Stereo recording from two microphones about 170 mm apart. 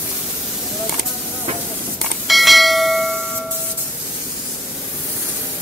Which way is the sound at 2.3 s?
Centre (ahead or behind).